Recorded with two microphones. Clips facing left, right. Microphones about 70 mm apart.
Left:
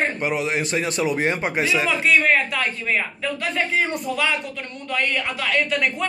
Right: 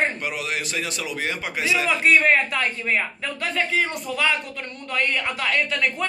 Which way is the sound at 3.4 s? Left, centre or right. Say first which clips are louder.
Even; centre.